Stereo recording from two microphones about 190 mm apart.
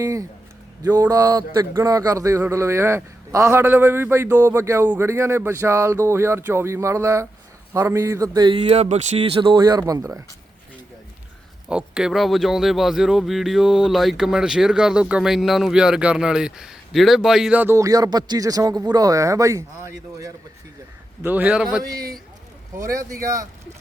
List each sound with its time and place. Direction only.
0.0 s a man's voice: 15° right (ahead or behind)
11.7 s a man's voice: 5° right (ahead or behind)
22.7 s a man's voice: 15° right (ahead or behind)